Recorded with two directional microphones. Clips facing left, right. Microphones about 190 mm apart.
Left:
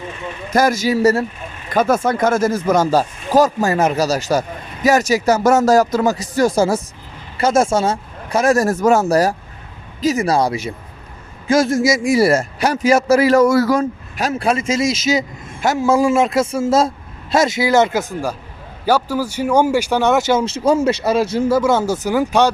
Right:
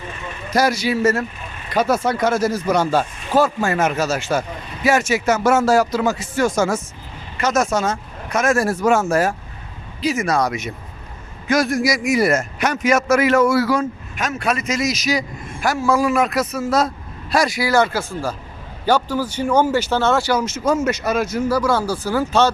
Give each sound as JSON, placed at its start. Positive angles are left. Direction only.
{"t": 0.5, "sound": "speech", "side_deg": 45}
{"t": 1.7, "sound": "speech", "side_deg": 50}
{"t": 20.4, "sound": "speech", "side_deg": 30}